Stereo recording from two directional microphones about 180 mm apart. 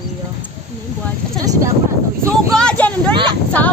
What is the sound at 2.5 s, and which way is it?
Speech, 5° left (ahead or behind).